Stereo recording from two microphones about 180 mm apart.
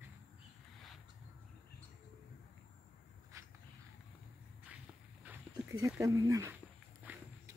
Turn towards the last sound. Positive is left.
turn(degrees=-10)  # may be behind; listen again after turning